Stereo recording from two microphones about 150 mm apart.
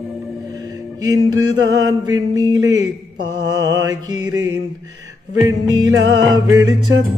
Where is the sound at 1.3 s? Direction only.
25° right (ahead or behind).